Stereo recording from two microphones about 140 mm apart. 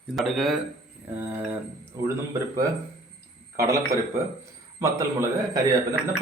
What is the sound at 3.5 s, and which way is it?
Speech, 20° right (ahead or behind).